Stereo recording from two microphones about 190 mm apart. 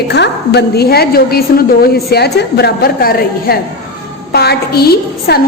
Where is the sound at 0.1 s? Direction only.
60° left (ahead or behind).